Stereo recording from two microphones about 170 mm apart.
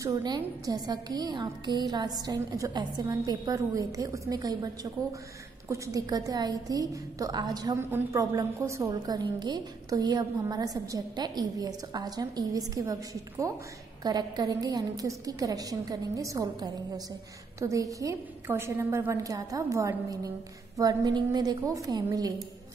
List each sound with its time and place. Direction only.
0.0 s a woman's voice: 20° right (ahead or behind)
5.7 s a woman's voice: 20° right (ahead or behind)